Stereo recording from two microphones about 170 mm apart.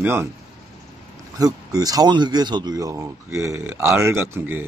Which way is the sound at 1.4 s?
20° right (ahead or behind).